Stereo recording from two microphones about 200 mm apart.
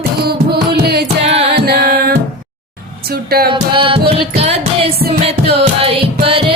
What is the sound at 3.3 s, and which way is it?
Music, 50° right (ahead or behind).